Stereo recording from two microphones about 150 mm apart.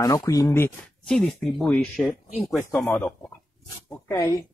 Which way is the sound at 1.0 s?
5° left (ahead or behind).